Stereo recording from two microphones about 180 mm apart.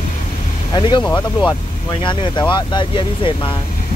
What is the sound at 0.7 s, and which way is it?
Speech, 25° left (ahead or behind).